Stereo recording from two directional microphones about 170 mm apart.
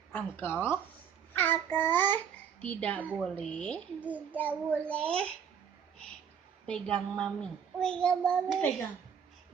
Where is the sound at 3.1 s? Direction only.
Centre (ahead or behind).